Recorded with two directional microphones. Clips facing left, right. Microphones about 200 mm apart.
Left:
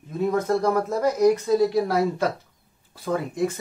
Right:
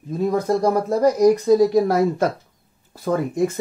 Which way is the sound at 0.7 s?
35° right (ahead or behind).